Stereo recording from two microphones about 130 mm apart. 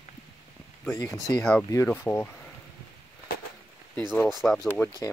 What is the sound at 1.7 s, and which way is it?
Speech, 20° left (ahead or behind).